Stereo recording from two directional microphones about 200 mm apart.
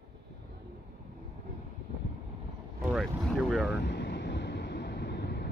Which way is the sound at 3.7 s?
55° left (ahead or behind).